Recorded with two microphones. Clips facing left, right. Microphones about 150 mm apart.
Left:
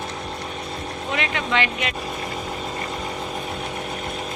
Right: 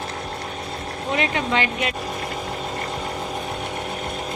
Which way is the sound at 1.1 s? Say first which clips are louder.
Right 2 dB; 40° right (ahead or behind).